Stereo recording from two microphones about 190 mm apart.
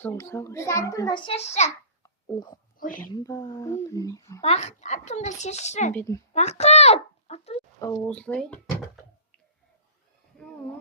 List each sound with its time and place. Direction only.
0.0 s a child's voice: 15° left (ahead or behind); by 1.7 s 35° left (ahead or behind)
2.2 s speech: 20° left (ahead or behind)
2.7 s speech: 45° left (ahead or behind)
3.0 s a child's voice: 20° left (ahead or behind)
4.4 s a child's voice: 35° left (ahead or behind)
5.9 s a child's voice: 10° left (ahead or behind)
6.3 s speech: 35° left (ahead or behind)
7.8 s a child's voice: 10° left (ahead or behind)